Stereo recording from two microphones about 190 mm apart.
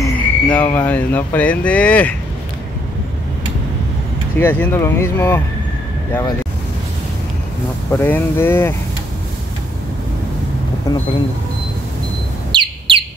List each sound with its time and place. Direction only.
0.0 s speech: 10° left (ahead or behind)
4.4 s speech: 10° left (ahead or behind)
7.9 s speech: 10° left (ahead or behind)
10.9 s a sound: 20° left (ahead or behind)
12.5 s bird: 25° right (ahead or behind)